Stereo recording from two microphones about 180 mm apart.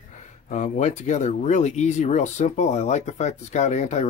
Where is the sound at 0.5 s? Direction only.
40° left (ahead or behind).